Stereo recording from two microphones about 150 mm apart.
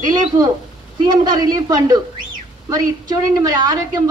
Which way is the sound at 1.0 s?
30° right (ahead or behind).